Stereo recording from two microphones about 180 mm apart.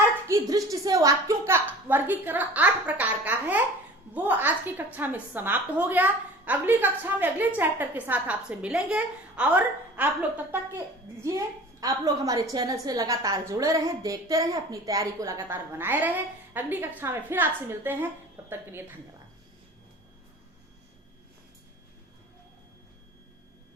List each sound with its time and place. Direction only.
0.3 s a woman's voice: 20° right (ahead or behind)